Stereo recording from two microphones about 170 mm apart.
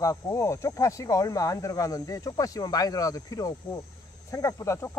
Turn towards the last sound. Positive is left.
turn(degrees=20)  # may be behind; listen again after turning